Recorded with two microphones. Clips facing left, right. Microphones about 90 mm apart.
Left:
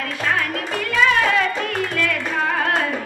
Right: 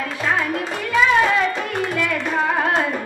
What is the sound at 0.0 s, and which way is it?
Music, 20° right (ahead or behind).